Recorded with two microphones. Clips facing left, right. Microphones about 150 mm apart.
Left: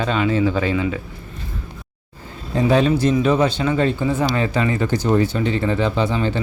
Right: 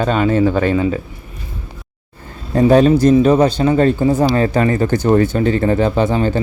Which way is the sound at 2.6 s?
45° right (ahead or behind).